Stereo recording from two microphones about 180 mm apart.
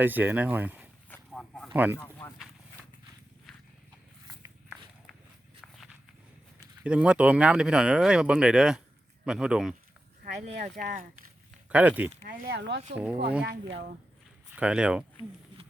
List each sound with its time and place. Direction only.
0.0 s speech: 10° right (ahead or behind)
1.1 s a sound: centre (ahead or behind)
1.7 s speech: 10° right (ahead or behind)
6.8 s speech: 5° right (ahead or behind)
10.2 s speech: 40° right (ahead or behind)
11.7 s speech: 10° right (ahead or behind)
12.2 s speech: 50° right (ahead or behind); by 12.8 s 70° right (ahead or behind)
14.5 s speech: 5° right (ahead or behind)